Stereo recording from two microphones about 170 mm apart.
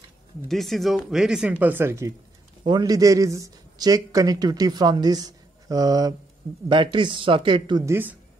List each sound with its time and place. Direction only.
0.5 s speech: centre (ahead or behind)